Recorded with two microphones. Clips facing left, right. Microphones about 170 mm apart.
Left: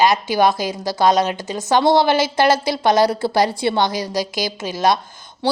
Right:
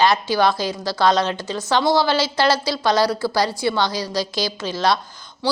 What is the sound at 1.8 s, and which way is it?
Speech, 55° left (ahead or behind).